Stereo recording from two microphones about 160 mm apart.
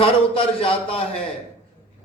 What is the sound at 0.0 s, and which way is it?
Speech, 35° left (ahead or behind).